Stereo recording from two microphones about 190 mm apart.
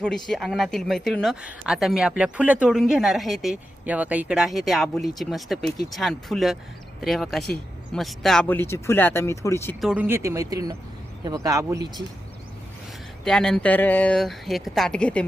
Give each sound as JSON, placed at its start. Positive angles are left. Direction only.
{"t": 0.3, "sound": "a woman's voice", "side_deg": 0}
{"t": 9.8, "sound": "speech", "side_deg": -5}
{"t": 13.2, "sound": "a woman's voice", "side_deg": 5}